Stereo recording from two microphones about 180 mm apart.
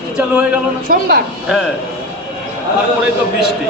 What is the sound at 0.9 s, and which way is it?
Speech, 50° right (ahead or behind).